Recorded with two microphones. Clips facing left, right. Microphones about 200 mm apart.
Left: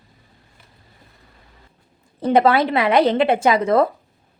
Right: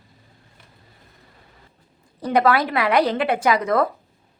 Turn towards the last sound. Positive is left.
turn(degrees=25)  # may be behind; listen again after turning